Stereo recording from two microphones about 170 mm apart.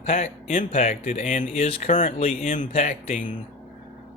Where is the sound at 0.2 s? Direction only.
45° left (ahead or behind).